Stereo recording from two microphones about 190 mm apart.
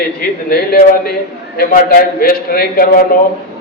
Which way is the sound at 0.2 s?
55° left (ahead or behind).